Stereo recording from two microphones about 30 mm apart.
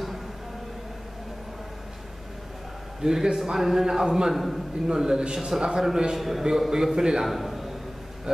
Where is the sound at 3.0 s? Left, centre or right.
Centre.